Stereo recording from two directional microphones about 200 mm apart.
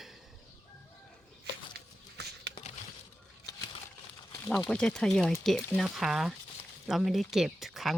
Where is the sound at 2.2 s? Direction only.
55° right (ahead or behind).